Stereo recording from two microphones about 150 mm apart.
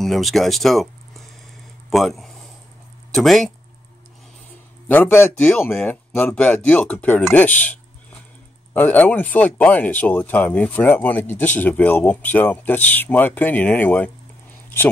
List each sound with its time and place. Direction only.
0.0 s speech: centre (ahead or behind)
4.8 s speech: 10° left (ahead or behind)
8.7 s speech: 10° left (ahead or behind)